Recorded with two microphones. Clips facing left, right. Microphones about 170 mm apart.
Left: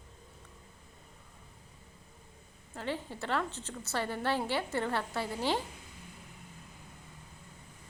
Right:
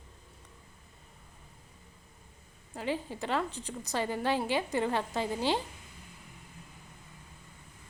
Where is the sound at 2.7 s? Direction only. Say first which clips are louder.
Right 3 dB; 15° right (ahead or behind).